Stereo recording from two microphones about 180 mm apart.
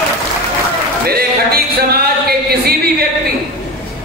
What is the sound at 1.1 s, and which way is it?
Music, 60° right (ahead or behind).